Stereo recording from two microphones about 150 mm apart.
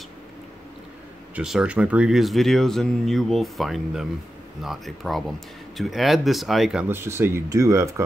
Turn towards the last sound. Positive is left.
turn(degrees=-20)  # may be behind; listen again after turning